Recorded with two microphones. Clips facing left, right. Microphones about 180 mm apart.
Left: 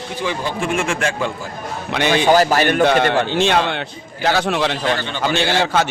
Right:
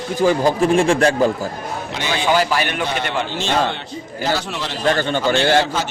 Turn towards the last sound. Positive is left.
turn(degrees=60)  # may be behind; listen again after turning